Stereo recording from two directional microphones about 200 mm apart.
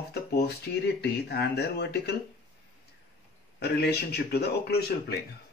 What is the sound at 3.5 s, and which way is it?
Speech, 55° left (ahead or behind).